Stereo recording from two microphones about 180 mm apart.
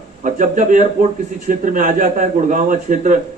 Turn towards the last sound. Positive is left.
turn(degrees=-45)  # may be behind; listen again after turning